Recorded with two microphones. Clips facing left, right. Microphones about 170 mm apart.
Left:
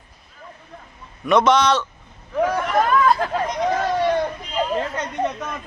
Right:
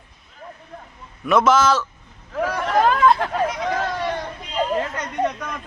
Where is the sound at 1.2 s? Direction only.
5° right (ahead or behind).